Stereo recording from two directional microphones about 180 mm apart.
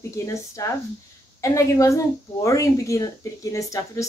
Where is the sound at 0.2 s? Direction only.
15° left (ahead or behind).